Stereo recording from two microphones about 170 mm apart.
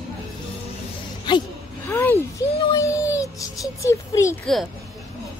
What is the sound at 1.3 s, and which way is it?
Speech, 25° left (ahead or behind).